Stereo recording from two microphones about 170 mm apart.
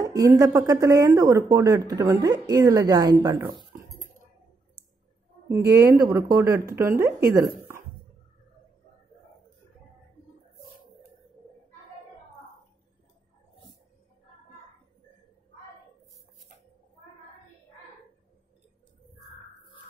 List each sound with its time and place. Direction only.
0.0 s speech: 20° right (ahead or behind)
5.7 s speech: 20° right (ahead or behind)